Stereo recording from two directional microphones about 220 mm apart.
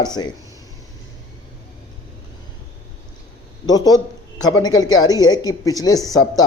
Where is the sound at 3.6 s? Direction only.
15° left (ahead or behind).